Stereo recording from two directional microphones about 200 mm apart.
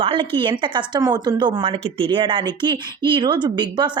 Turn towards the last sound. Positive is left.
turn(degrees=-20)  # may be behind; listen again after turning